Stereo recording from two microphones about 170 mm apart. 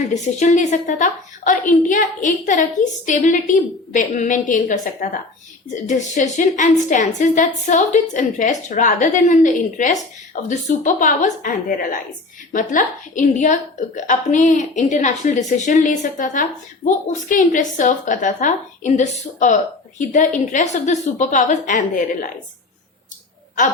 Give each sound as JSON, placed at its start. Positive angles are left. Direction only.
{"t": 0.1, "sound": "a woman's voice", "side_deg": 45}